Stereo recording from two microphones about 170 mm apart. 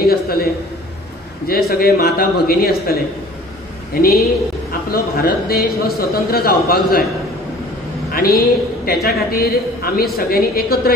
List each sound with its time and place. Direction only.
0.0 s a man's voice: 60° left (ahead or behind)
1.7 s a man's voice: 60° left (ahead or behind)
8.1 s a woman's voice: 60° left (ahead or behind)